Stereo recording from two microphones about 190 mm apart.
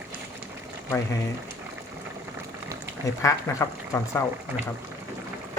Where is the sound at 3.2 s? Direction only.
15° left (ahead or behind).